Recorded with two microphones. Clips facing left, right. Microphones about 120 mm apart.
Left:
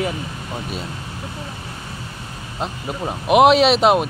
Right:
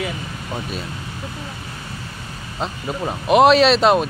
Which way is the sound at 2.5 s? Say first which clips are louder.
Right 1 dB; 10° left (ahead or behind).